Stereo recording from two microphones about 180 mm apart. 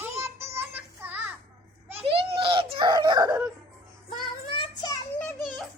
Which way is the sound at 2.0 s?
30° right (ahead or behind).